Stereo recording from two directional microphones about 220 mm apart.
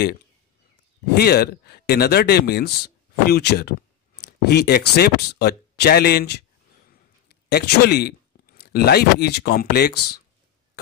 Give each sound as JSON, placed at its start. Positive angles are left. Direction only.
{"t": 1.1, "sound": "speech", "side_deg": 45}
{"t": 7.5, "sound": "speech", "side_deg": 45}